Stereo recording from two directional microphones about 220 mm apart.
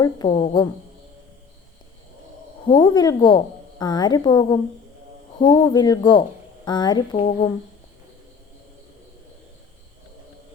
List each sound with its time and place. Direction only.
0.0 s speech: 20° left (ahead or behind)
2.6 s a woman's voice: 20° left (ahead or behind)